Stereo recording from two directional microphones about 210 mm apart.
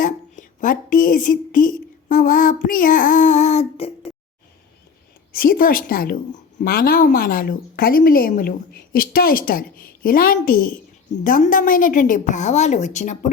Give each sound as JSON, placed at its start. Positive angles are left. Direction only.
{"t": 0.0, "sound": "a woman's voice", "side_deg": 40}
{"t": 5.3, "sound": "a woman's voice", "side_deg": 40}